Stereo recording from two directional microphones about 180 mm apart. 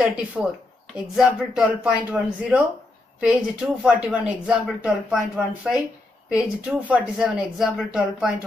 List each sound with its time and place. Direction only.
0.4 s speech: centre (ahead or behind)